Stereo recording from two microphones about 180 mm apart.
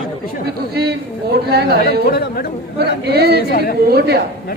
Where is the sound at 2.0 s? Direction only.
60° left (ahead or behind).